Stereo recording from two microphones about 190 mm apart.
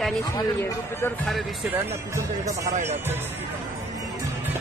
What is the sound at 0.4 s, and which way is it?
Speech, 15° left (ahead or behind).